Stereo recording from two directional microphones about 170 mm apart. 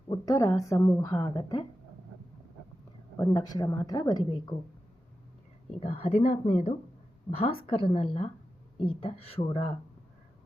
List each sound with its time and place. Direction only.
0.1 s a woman's voice: 20° left (ahead or behind)
3.2 s a woman's voice: 20° left (ahead or behind)
5.8 s speech: 35° left (ahead or behind)